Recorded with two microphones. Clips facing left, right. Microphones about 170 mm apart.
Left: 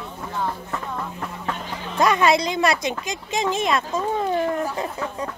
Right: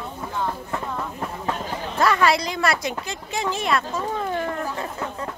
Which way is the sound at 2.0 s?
20° left (ahead or behind).